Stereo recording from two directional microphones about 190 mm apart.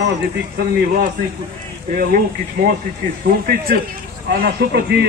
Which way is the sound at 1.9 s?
50° right (ahead or behind).